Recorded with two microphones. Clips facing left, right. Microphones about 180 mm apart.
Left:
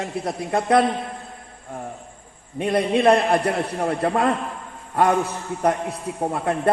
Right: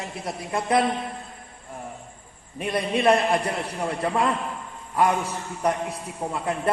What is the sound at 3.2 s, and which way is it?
A man's voice, 50° left (ahead or behind).